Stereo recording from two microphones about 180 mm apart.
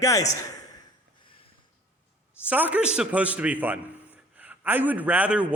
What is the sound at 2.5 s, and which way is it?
A man's voice, 10° right (ahead or behind).